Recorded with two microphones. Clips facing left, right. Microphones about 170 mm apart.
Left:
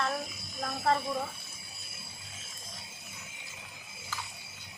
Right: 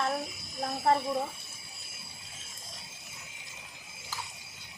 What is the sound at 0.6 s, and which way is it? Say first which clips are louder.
Speech: right 2 dB; 25° right (ahead or behind).